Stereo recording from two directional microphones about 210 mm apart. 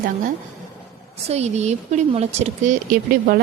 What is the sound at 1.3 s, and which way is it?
A woman's voice, 30° right (ahead or behind).